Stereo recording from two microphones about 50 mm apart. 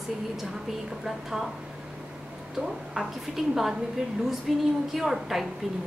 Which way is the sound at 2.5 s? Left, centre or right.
Centre.